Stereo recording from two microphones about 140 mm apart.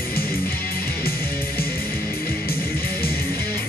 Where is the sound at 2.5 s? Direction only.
15° left (ahead or behind).